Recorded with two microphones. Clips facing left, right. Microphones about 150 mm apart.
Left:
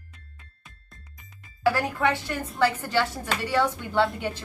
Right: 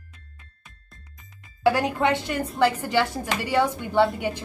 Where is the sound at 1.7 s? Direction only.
20° right (ahead or behind).